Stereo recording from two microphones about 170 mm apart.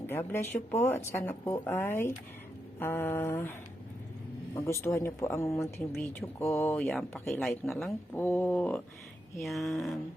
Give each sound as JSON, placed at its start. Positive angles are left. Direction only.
{"t": 0.1, "sound": "speech", "side_deg": 15}
{"t": 4.5, "sound": "speech", "side_deg": 15}
{"t": 8.1, "sound": "speech", "side_deg": 10}